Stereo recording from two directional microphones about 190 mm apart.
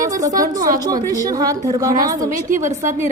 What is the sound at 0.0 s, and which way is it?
A woman's voice, 20° right (ahead or behind).